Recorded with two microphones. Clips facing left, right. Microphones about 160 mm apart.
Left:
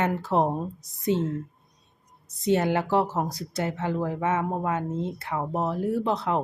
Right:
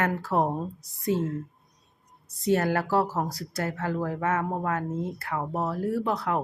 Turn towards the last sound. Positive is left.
turn(degrees=25)  # may be behind; listen again after turning